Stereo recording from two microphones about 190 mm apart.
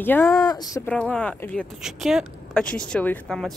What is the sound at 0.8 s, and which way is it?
Speech, 5° left (ahead or behind).